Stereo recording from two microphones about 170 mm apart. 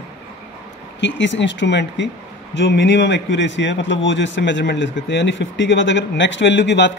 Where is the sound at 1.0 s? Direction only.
90° left.